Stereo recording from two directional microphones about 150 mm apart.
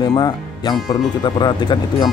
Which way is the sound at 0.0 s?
30° left (ahead or behind).